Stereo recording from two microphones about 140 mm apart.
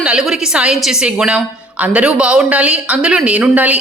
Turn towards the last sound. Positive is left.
turn(degrees=-10)  # may be behind; listen again after turning